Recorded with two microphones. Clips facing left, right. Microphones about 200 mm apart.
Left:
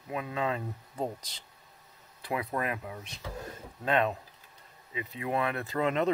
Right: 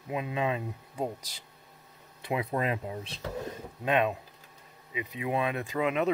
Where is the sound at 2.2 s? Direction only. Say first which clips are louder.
Right 2 dB; 20° right (ahead or behind).